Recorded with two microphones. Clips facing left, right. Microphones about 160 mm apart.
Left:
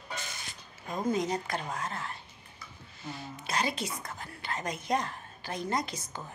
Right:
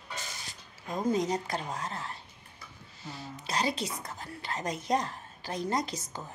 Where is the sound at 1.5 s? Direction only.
35° right (ahead or behind).